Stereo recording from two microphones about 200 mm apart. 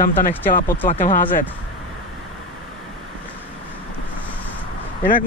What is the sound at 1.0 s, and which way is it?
Speech, 40° left (ahead or behind).